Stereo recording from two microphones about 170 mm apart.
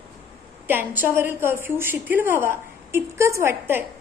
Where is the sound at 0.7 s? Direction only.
10° right (ahead or behind).